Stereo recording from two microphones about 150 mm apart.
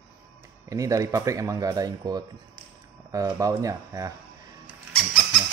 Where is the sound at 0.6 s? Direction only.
20° right (ahead or behind).